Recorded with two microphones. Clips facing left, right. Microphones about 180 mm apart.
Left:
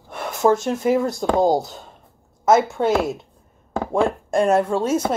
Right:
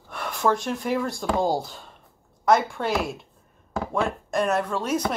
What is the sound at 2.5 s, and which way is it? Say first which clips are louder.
Speech: left 5 dB; 25° left (ahead or behind).